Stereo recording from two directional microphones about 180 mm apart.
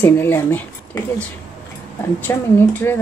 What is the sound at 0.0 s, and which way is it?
Speech, 10° left (ahead or behind).